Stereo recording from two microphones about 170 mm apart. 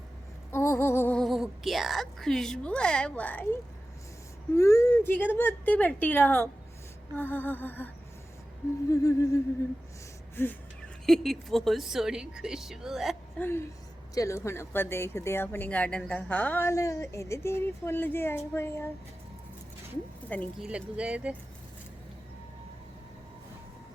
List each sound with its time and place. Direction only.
0.5 s music: 15° left (ahead or behind)
1.2 s a woman's voice: centre (ahead or behind)
8.9 s a woman's voice: 20° left (ahead or behind); by 13.1 s centre (ahead or behind)
13.4 s speech: 15° left (ahead or behind)
20.6 s speech: 5° right (ahead or behind)